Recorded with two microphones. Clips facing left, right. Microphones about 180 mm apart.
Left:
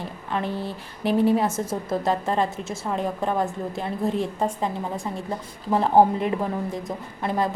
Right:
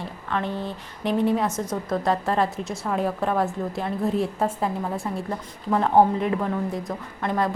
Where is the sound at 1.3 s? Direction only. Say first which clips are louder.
Left 2 dB; 25° left (ahead or behind).